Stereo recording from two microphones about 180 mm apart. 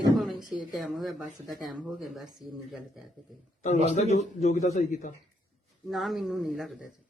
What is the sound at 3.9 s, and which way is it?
A man's voice, 40° left (ahead or behind).